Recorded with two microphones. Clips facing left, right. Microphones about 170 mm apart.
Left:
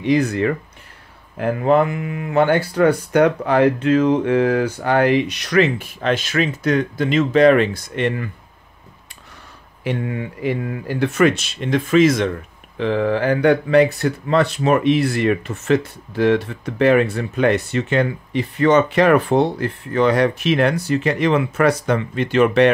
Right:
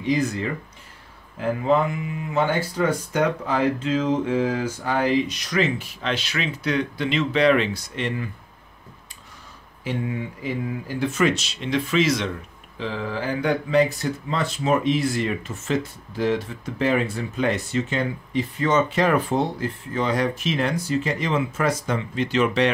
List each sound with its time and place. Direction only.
0.0 s speech: 65° left (ahead or behind)
9.8 s speech: 65° left (ahead or behind); by 12.3 s 50° left (ahead or behind)
12.7 s speech: 65° left (ahead or behind)